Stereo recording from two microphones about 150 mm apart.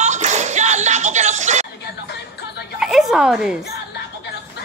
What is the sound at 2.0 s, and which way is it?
Music, 90° left.